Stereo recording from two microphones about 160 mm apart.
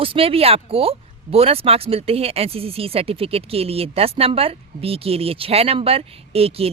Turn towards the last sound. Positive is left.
turn(degrees=-40)  # may be behind; listen again after turning